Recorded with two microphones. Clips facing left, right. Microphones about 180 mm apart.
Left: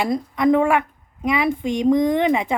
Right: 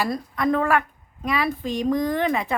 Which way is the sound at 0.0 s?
20° left (ahead or behind).